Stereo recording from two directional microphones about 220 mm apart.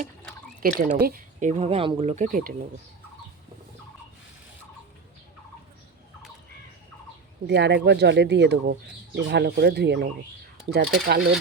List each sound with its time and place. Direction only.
0.6 s speech: 40° right (ahead or behind)
7.4 s speech: 50° right (ahead or behind)